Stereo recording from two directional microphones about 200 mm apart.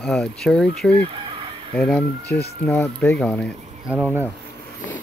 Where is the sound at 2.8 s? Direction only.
5° left (ahead or behind).